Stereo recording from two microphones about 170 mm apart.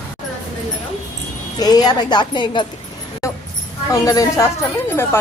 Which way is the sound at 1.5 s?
25° left (ahead or behind).